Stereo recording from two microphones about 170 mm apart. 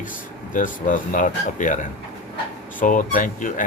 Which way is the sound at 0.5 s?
50° left (ahead or behind).